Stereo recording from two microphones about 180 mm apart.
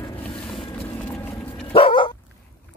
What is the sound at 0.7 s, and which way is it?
Vehicle, 10° left (ahead or behind).